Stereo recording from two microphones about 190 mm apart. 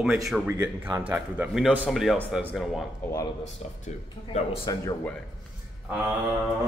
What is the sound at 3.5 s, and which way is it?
Speech, 35° left (ahead or behind).